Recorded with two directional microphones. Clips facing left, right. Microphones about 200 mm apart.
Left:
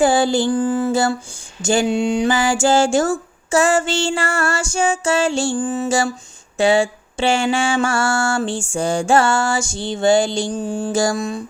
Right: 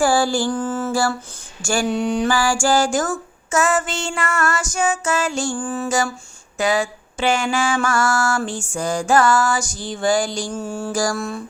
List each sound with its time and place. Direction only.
0.0 s mantra: 20° left (ahead or behind)